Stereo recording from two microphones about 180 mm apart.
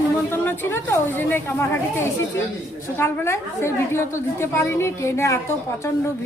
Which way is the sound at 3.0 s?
15° left (ahead or behind).